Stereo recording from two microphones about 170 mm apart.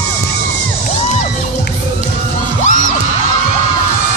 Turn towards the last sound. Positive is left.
turn(degrees=50)  # may be behind; listen again after turning